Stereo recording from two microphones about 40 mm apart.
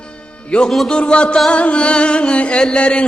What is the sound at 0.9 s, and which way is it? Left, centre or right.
Music, left.